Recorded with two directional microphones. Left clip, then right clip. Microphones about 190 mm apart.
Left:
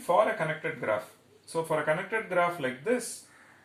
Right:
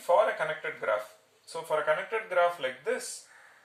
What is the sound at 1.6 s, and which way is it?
Speech, 20° right (ahead or behind).